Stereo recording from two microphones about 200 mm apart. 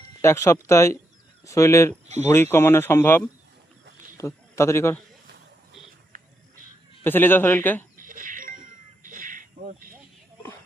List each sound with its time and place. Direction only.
0.2 s speech: 15° left (ahead or behind)
2.0 s speech: 35° right (ahead or behind)
2.3 s a man's voice: 10° left (ahead or behind)
6.1 s a sound: 45° right (ahead or behind)
7.0 s speech: 10° left (ahead or behind)
7.9 s music: 40° right (ahead or behind)
9.0 s a sound: 40° right (ahead or behind)